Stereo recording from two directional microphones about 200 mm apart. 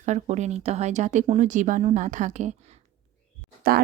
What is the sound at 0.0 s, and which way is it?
Speech, 35° right (ahead or behind).